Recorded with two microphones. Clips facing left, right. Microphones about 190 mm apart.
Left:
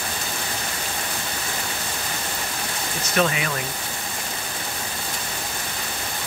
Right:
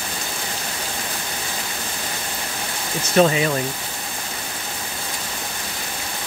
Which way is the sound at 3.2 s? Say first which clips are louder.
Right 6 dB; 30° right (ahead or behind).